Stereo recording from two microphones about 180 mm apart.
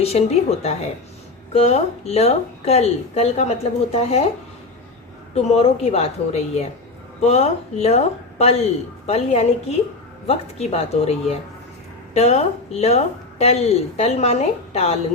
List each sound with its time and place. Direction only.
0.0 s a woman's voice: 35° left (ahead or behind)
5.3 s a woman's voice: 35° left (ahead or behind)